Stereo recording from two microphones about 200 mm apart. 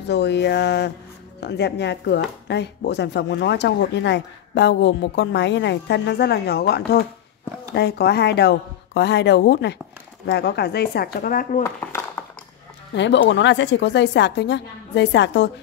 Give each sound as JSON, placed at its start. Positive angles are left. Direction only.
{"t": 0.0, "sound": "speech", "side_deg": 60}
{"t": 11.6, "sound": "dishes", "side_deg": 10}
{"t": 12.9, "sound": "speech", "side_deg": 65}